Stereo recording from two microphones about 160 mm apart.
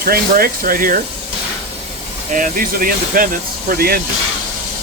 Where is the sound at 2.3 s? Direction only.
60° right (ahead or behind).